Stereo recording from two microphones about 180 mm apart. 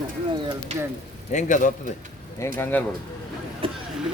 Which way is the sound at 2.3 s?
15° left (ahead or behind).